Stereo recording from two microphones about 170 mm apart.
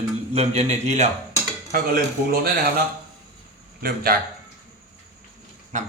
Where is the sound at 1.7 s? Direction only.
55° right (ahead or behind).